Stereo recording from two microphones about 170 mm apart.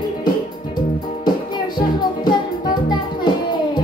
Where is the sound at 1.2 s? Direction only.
25° left (ahead or behind).